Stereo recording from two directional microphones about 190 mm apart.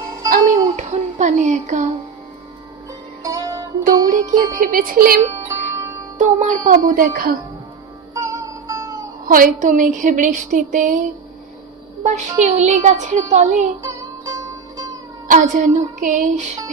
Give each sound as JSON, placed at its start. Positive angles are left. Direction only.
{"t": 0.3, "sound": "a sound", "side_deg": -40}
{"t": 3.3, "sound": "music", "side_deg": -15}
{"t": 4.0, "sound": "music", "side_deg": -45}
{"t": 5.3, "sound": "music", "side_deg": -15}
{"t": 6.1, "sound": "music", "side_deg": -40}
{"t": 8.1, "sound": "music", "side_deg": -15}
{"t": 9.3, "sound": "music", "side_deg": -45}
{"t": 10.0, "sound": "speech", "side_deg": -40}
{"t": 12.0, "sound": "speech", "side_deg": -35}
{"t": 13.8, "sound": "music", "side_deg": -15}
{"t": 15.2, "sound": "speech", "side_deg": -45}